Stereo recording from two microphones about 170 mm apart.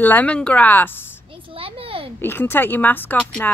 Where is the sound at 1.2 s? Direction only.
30° right (ahead or behind).